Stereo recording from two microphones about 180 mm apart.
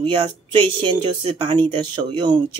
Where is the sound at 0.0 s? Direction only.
25° right (ahead or behind).